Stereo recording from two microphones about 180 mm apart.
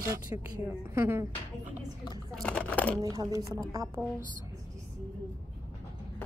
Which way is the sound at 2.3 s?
5° left (ahead or behind).